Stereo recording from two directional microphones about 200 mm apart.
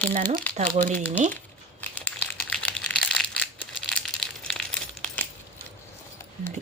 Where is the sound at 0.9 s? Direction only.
10° left (ahead or behind).